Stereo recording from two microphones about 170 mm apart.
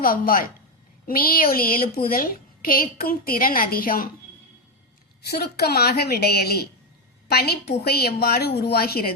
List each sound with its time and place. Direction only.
0.0 s a woman's voice: 60° left (ahead or behind)
5.3 s a woman's voice: 70° left (ahead or behind)